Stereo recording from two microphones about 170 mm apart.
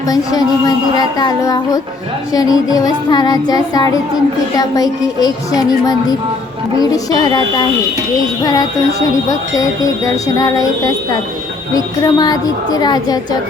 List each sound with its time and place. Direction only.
0.1 s music: 20° left (ahead or behind)
8.4 s music: 20° left (ahead or behind)
11.7 s music: 25° left (ahead or behind)